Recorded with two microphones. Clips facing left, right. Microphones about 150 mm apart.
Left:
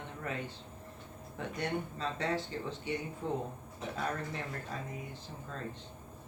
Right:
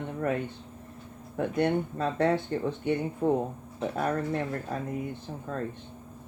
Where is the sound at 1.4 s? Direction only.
55° right (ahead or behind).